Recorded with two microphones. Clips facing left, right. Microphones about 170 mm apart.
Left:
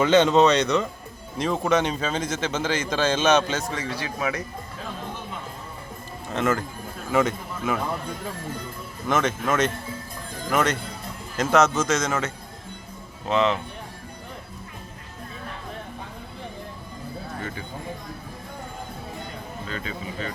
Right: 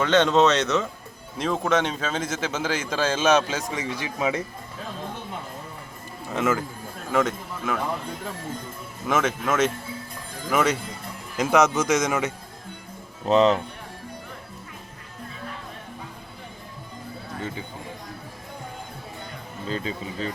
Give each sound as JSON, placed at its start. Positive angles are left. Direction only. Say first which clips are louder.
{"t": 0.0, "sound": "a man's voice", "louder": "left 2 dB", "side_deg": 5}
{"t": 6.3, "sound": "speech", "louder": "even", "side_deg": -5}
{"t": 9.0, "sound": "speech", "louder": "even", "side_deg": -5}
{"t": 13.2, "sound": "speech", "louder": "right 4 dB", "side_deg": -35}
{"t": 19.6, "sound": "speech", "louder": "right 5 dB", "side_deg": -30}